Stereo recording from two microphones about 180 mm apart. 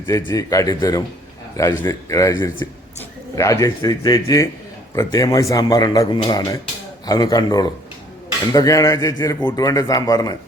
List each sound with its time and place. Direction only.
0.3 s a man's voice: 20° left (ahead or behind)